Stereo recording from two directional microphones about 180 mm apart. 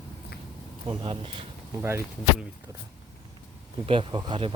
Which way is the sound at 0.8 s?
25° right (ahead or behind).